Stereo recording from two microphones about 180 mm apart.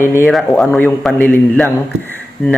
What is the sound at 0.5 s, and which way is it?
A man's voice, 10° left (ahead or behind).